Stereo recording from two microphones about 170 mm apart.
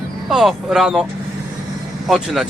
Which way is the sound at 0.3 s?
Centre (ahead or behind).